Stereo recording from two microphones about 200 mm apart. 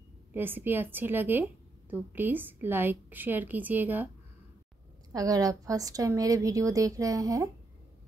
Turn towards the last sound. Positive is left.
turn(degrees=-15)  # may be behind; listen again after turning